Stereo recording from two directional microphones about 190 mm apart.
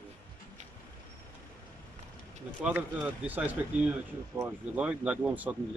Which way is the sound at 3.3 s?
10° right (ahead or behind).